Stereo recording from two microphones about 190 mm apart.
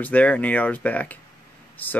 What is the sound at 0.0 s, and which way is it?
Speech, 10° left (ahead or behind).